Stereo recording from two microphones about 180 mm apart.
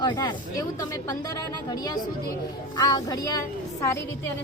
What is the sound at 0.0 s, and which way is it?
A woman's voice, 25° left (ahead or behind).